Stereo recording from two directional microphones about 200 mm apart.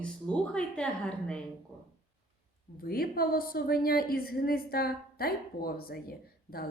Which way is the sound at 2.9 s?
45° left (ahead or behind).